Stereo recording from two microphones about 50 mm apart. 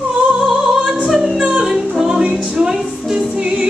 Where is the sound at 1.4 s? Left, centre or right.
Centre.